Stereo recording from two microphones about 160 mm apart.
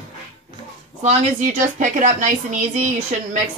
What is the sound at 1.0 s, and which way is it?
A woman's voice, 50° right (ahead or behind).